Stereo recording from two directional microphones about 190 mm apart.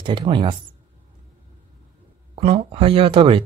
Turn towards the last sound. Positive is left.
turn(degrees=-30)  # may be behind; listen again after turning